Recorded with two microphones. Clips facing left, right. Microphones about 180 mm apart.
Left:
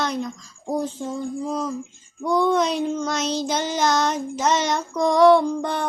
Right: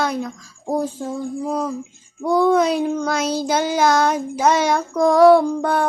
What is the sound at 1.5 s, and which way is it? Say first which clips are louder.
Child singing: right 5 dB; 55° right (ahead or behind).